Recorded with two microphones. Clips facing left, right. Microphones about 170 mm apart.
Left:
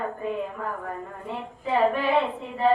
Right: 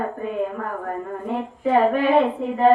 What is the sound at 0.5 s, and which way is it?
Speech, 50° right (ahead or behind).